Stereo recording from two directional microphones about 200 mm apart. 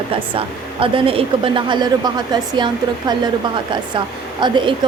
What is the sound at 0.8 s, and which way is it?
Speech, 25° right (ahead or behind).